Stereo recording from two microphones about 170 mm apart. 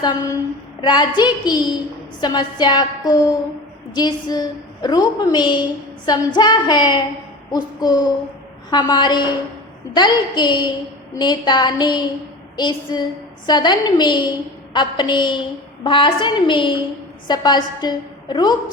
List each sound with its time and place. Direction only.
0.0 s a woman's voice: 25° left (ahead or behind)